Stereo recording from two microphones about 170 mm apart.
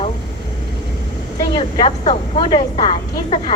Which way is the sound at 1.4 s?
25° left (ahead or behind).